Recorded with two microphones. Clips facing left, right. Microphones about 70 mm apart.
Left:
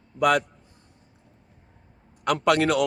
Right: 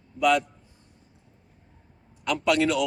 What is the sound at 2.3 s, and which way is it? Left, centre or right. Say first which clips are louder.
Speech: left 2 dB; left.